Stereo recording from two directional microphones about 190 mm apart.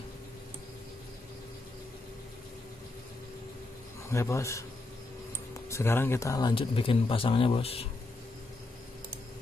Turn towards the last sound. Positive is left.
turn(degrees=30)  # may be behind; listen again after turning